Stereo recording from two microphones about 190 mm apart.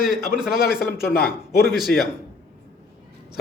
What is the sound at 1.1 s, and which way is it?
Speech, 55° left (ahead or behind).